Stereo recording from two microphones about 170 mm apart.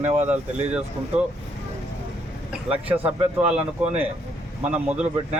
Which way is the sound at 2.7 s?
10° right (ahead or behind).